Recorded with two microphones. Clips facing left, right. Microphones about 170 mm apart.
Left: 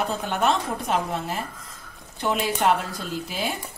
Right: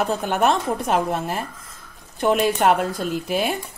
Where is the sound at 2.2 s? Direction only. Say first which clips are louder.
Right 6 dB; 50° right (ahead or behind).